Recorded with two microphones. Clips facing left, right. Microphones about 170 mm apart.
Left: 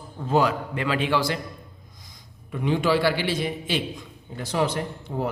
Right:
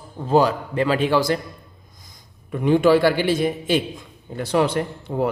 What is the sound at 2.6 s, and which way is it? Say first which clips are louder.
A man's voice: right 6 dB; 50° right (ahead or behind).